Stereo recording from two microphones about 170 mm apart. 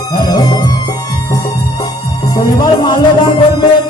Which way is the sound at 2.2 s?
25° left (ahead or behind).